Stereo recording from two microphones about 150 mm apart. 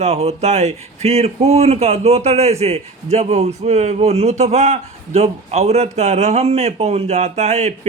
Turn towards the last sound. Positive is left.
turn(degrees=-45)  # may be behind; listen again after turning